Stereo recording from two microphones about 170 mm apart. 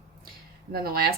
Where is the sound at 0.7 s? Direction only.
65° right (ahead or behind).